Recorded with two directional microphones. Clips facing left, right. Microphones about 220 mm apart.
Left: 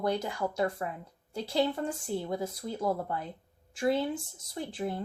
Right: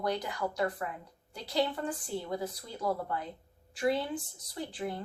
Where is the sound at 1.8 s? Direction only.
25° left (ahead or behind).